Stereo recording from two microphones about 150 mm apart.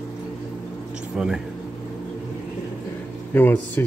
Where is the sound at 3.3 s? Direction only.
15° left (ahead or behind).